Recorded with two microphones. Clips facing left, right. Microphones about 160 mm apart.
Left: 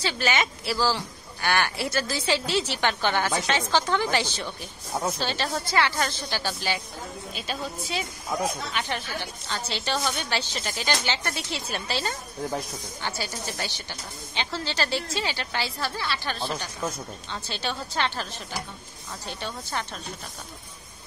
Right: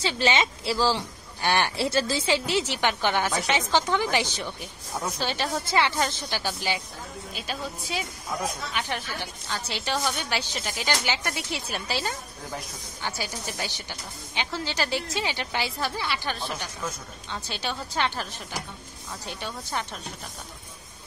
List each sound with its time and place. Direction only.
0.0 s a woman's voice: 25° right (ahead or behind)